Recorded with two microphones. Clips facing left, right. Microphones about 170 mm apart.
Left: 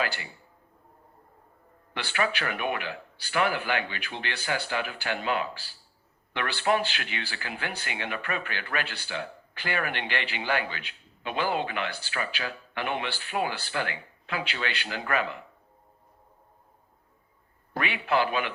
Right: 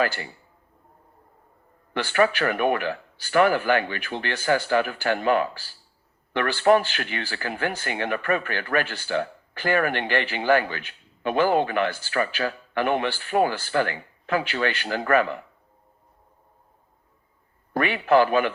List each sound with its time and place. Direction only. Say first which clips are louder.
0.0 s speech: right 6 dB; 45° right (ahead or behind)
1.9 s speech: right 8 dB; 45° right (ahead or behind)
17.7 s speech: right 7 dB; 45° right (ahead or behind)